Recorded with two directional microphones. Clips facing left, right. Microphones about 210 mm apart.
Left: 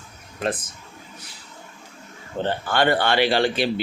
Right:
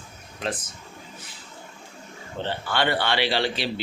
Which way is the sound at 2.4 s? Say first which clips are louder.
Left 4 dB; 50° left (ahead or behind).